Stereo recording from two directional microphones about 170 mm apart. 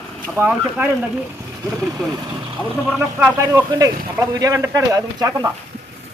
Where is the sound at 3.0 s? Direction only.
15° right (ahead or behind).